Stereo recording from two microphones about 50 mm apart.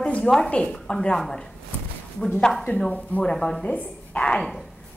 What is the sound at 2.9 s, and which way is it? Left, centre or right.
Speech, left.